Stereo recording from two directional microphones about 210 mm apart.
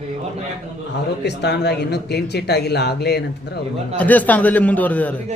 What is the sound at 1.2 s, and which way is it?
Speech, 55° left (ahead or behind).